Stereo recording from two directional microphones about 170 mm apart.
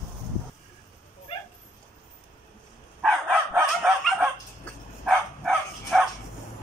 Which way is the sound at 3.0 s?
5° right (ahead or behind).